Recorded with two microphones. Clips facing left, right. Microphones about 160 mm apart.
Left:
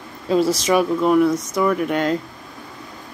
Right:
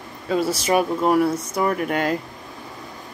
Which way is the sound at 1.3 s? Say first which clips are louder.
Left 3 dB; 10° right (ahead or behind).